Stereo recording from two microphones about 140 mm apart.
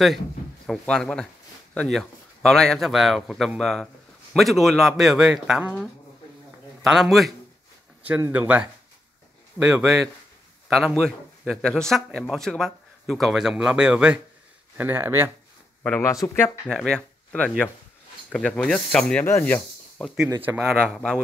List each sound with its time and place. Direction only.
0.7 s speech: 5° left (ahead or behind)
6.8 s speech: centre (ahead or behind)
8.3 s speech: 10° right (ahead or behind)
16.0 s speech: 20° left (ahead or behind)
16.6 s speech: 5° left (ahead or behind)
20.3 s speech: 10° right (ahead or behind)
20.8 s speech: 5° left (ahead or behind)